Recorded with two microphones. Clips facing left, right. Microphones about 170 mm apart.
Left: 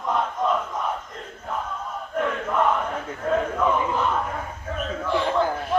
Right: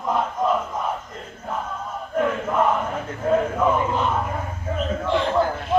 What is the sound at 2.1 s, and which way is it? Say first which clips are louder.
Crowd: right 3 dB; 5° right (ahead or behind).